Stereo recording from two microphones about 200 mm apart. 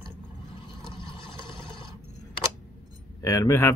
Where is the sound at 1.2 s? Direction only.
25° left (ahead or behind).